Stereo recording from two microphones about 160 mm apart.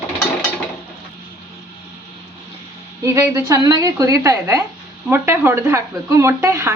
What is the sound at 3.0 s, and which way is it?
Speech, 20° right (ahead or behind).